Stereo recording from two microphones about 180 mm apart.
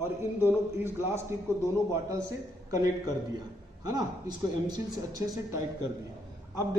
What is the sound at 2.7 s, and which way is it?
A man's voice, 20° right (ahead or behind).